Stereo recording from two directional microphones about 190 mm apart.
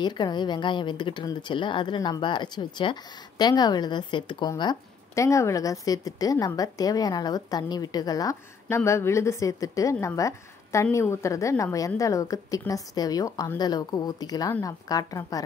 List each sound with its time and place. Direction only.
0.0 s speech: 20° left (ahead or behind)